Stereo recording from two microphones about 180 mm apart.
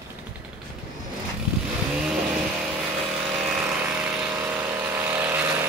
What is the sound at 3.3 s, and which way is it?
Vehicle, 5° right (ahead or behind).